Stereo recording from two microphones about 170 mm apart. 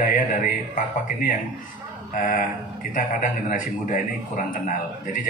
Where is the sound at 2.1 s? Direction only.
55° left (ahead or behind).